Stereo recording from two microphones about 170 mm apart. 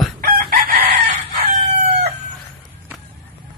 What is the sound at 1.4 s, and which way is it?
Crowing, 40° right (ahead or behind).